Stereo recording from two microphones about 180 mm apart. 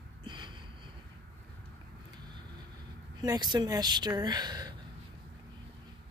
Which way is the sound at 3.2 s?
25° right (ahead or behind).